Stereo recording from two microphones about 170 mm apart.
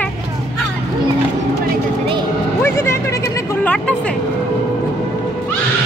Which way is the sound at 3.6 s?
5° left (ahead or behind).